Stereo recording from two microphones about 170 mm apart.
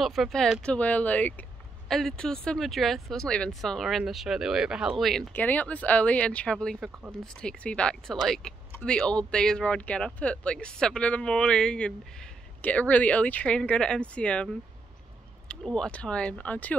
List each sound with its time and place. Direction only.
0.0 s speech: centre (ahead or behind)